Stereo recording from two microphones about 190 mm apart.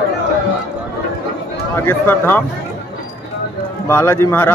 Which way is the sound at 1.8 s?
10° left (ahead or behind).